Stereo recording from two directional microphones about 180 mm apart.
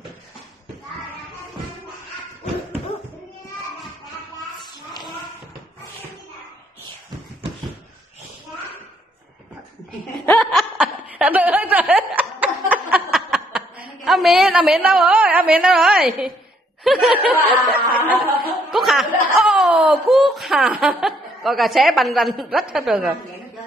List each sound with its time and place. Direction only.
4.6 s a sound: 25° left (ahead or behind)
10.2 s laughter: 5° left (ahead or behind)
14.0 s a woman's voice: centre (ahead or behind)
16.8 s snicker: centre (ahead or behind)
17.2 s a sound: 10° right (ahead or behind)
19.3 s a woman's voice: centre (ahead or behind)